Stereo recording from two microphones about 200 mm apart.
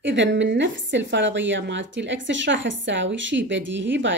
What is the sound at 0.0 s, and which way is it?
A woman's voice, 65° right (ahead or behind).